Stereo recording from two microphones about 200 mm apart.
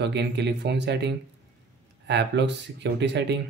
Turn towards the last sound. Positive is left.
turn(degrees=-60)  # may be behind; listen again after turning